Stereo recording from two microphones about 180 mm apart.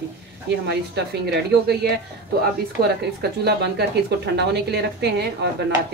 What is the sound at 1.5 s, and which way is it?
Speech, 65° right (ahead or behind).